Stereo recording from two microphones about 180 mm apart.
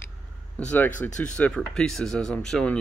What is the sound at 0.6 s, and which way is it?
Speech, 10° left (ahead or behind).